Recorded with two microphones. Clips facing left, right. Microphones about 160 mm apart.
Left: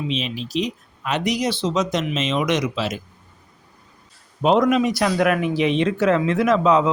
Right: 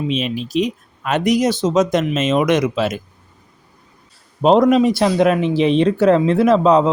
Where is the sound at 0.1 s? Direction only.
50° right (ahead or behind).